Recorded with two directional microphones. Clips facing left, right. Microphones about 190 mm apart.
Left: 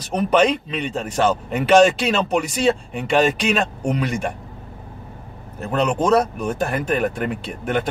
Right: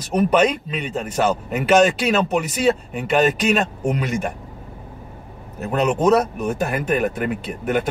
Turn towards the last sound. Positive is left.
turn(degrees=-5)  # may be behind; listen again after turning